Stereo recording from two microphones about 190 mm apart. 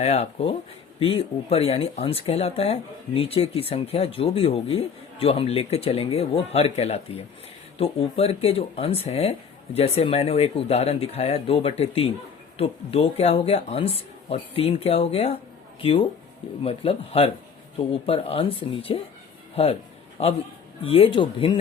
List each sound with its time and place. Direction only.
0.0 s speech: 35° left (ahead or behind)